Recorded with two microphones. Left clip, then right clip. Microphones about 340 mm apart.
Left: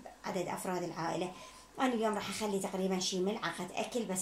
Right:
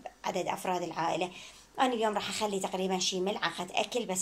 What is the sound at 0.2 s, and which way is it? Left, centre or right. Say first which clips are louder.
A woman's voice: right 5 dB; right.